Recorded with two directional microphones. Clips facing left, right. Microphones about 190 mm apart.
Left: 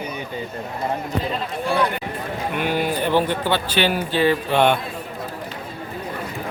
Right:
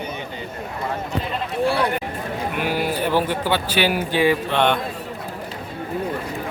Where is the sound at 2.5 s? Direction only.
5° right (ahead or behind).